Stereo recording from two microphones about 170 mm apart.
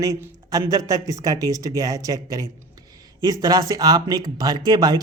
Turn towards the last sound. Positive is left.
turn(degrees=-25)  # may be behind; listen again after turning